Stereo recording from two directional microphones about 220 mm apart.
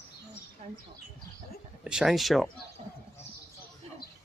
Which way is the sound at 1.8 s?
5° right (ahead or behind).